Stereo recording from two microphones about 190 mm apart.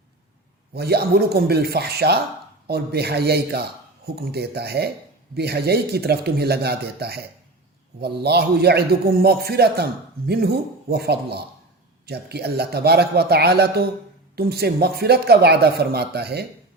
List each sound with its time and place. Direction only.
0.7 s a man's voice: 55° right (ahead or behind)